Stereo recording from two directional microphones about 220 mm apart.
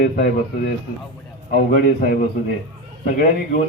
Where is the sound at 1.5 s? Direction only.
40° left (ahead or behind).